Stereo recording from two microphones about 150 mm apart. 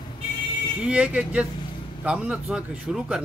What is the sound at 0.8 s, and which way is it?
Speech, 5° right (ahead or behind).